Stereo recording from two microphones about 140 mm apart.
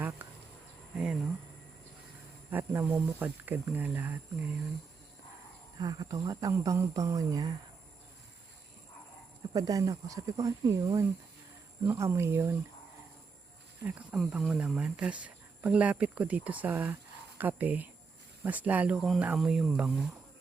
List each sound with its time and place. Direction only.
0.2 s insect: 15° right (ahead or behind)
0.9 s speech: 5° right (ahead or behind)
2.5 s speech: 15° right (ahead or behind)
5.8 s speech: 30° right (ahead or behind)
9.5 s speech: 25° right (ahead or behind)
14.2 s speech: 5° right (ahead or behind)